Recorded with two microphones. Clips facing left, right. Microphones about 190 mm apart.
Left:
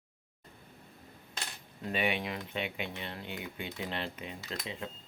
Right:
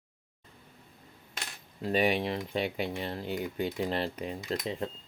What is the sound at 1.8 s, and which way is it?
Speech, 35° right (ahead or behind).